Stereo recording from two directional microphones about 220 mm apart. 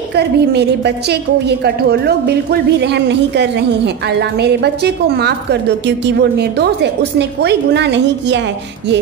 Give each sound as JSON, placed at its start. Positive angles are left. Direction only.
{"t": 0.1, "sound": "a woman's voice", "side_deg": -50}